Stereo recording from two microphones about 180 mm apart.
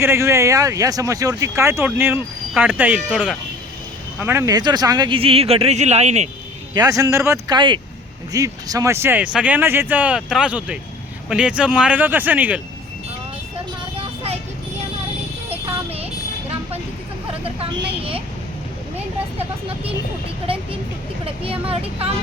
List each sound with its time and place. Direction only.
0.0 s speech: 15° right (ahead or behind)
4.2 s speech: 15° right (ahead or behind); by 6.2 s 40° right (ahead or behind)
6.7 s speech: 20° right (ahead or behind)
15.4 s vehicle: 30° right (ahead or behind)
17.4 s vehicle: 30° right (ahead or behind)
19.4 s speech: 30° right (ahead or behind)